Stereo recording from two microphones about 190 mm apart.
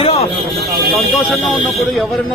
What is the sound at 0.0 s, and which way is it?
Vehicle, 30° left (ahead or behind).